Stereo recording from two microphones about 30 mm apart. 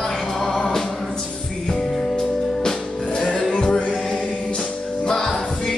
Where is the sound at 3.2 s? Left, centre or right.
Centre.